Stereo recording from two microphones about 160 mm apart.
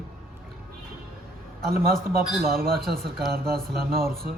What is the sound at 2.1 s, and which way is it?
Mantra, 65° right (ahead or behind).